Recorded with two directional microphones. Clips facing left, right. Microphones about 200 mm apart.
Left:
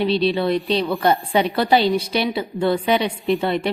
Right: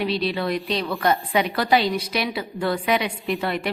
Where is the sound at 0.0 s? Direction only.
30° left (ahead or behind).